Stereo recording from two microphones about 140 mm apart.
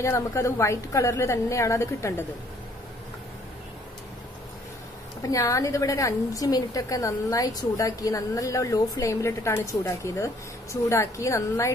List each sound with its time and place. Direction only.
0.0 s a woman's voice: 20° left (ahead or behind)
5.2 s a woman's voice: 25° left (ahead or behind)